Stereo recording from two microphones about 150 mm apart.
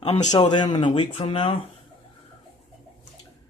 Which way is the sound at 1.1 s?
40° left (ahead or behind).